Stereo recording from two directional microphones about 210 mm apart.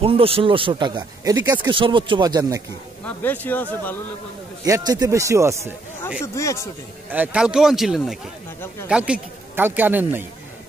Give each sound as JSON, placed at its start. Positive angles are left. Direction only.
{"t": 0.0, "sound": "speech", "side_deg": -25}
{"t": 3.1, "sound": "speech", "side_deg": 10}
{"t": 4.6, "sound": "speech", "side_deg": -15}
{"t": 6.2, "sound": "speech", "side_deg": 15}
{"t": 7.1, "sound": "speech", "side_deg": -5}